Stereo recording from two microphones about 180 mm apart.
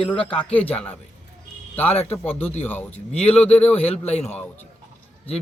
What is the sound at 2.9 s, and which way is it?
Speech, 35° left (ahead or behind).